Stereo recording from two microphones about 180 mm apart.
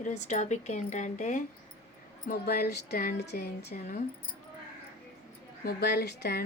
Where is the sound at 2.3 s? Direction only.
60° left (ahead or behind).